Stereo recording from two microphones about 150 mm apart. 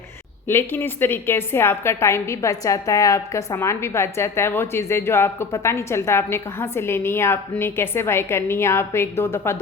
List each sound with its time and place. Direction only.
0.4 s a woman's voice: 15° left (ahead or behind)